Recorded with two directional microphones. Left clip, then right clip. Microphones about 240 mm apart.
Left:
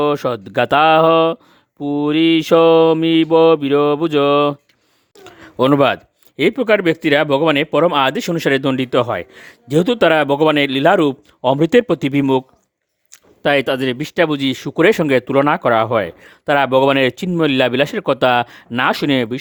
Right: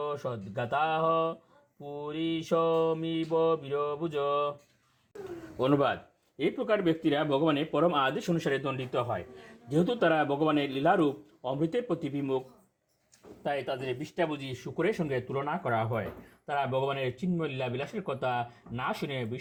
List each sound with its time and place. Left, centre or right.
0.0 s speech: left
5.5 s speech: left
13.4 s speech: left